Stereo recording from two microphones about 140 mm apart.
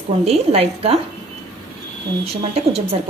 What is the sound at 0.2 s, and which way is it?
Speech, 45° right (ahead or behind).